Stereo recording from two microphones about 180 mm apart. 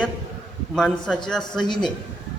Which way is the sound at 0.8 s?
5° left (ahead or behind).